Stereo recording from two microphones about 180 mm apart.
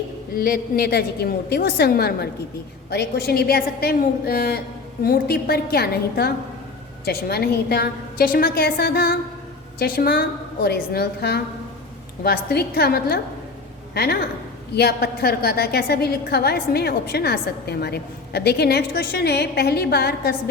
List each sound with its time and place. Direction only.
0.3 s a woman's voice: 55° left (ahead or behind)